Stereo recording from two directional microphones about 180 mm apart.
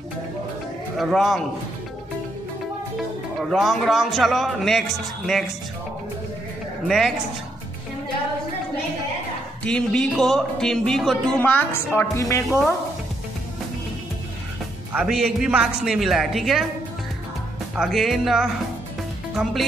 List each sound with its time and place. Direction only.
0.9 s speech: centre (ahead or behind)
3.4 s speech: centre (ahead or behind)
6.9 s speech: centre (ahead or behind)
9.6 s speech: 5° left (ahead or behind)
12.4 s speech: centre (ahead or behind)
14.9 s speech: 5° right (ahead or behind)
17.7 s speech: centre (ahead or behind)